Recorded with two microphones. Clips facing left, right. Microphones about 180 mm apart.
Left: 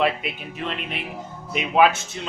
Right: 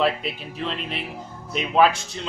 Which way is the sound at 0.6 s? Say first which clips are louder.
Even; 5° left (ahead or behind).